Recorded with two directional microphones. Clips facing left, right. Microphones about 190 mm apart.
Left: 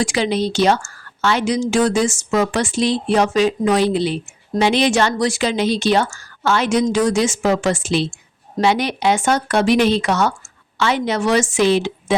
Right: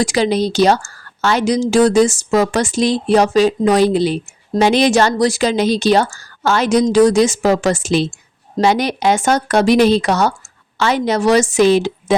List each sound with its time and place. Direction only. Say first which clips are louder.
0.0 s a woman's voice: right 3 dB; 40° right (ahead or behind)